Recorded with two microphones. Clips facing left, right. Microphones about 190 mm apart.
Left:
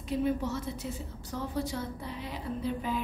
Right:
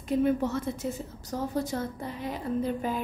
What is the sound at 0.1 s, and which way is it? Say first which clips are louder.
A woman's voice: right 5 dB; 55° right (ahead or behind).